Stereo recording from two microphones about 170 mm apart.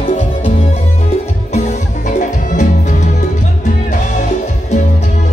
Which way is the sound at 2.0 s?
45° left (ahead or behind).